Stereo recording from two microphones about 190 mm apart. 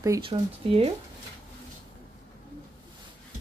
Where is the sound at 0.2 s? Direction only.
30° right (ahead or behind).